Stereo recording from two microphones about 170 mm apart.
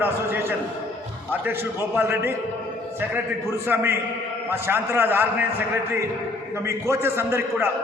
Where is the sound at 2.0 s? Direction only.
15° right (ahead or behind).